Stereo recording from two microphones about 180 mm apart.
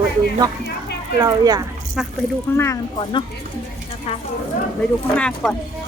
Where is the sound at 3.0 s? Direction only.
25° left (ahead or behind).